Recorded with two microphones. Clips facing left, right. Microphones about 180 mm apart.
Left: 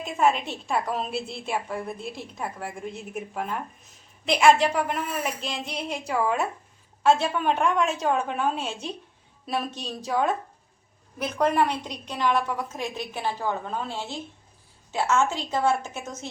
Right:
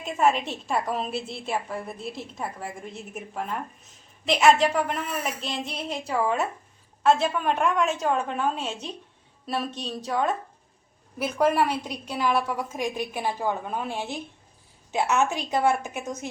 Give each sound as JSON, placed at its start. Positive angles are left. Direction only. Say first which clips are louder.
{"t": 0.0, "sound": "a woman's voice", "louder": "even", "side_deg": 0}